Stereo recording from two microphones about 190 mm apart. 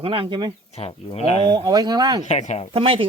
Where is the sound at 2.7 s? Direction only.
30° right (ahead or behind).